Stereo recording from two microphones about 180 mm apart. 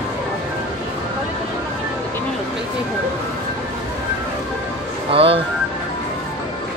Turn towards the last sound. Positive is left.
turn(degrees=-30)  # may be behind; listen again after turning